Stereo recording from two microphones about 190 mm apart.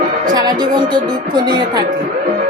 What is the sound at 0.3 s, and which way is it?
Speech, 20° right (ahead or behind).